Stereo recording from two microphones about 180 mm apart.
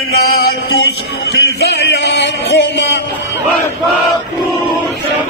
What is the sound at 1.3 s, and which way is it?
Music, 70° left (ahead or behind).